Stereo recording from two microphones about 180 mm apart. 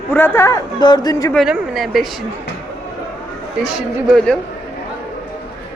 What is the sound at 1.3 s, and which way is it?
Speech, centre (ahead or behind).